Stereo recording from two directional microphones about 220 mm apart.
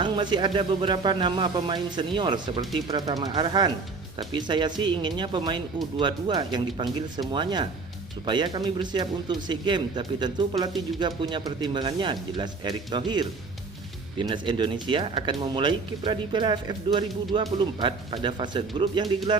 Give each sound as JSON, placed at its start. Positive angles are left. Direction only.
{"t": 0.0, "sound": "speech", "side_deg": -20}